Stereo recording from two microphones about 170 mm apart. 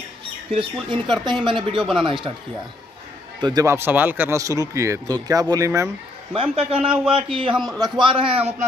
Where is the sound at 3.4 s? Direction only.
20° right (ahead or behind).